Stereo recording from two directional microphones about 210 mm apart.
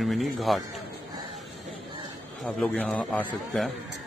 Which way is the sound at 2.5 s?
5° left (ahead or behind).